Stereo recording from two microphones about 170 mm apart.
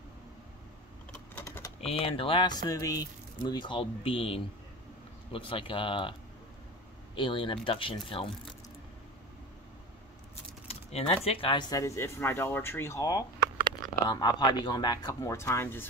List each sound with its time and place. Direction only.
1.3 s typing: 15° left (ahead or behind)
1.8 s speech: 35° left (ahead or behind)
7.2 s speech: 30° left (ahead or behind)
10.7 s a sound: 35° left (ahead or behind)
11.2 s speech: 30° left (ahead or behind)
11.8 s speech: 15° left (ahead or behind)